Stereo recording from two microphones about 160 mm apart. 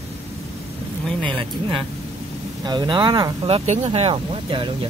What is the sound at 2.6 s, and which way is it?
Speech, 25° right (ahead or behind).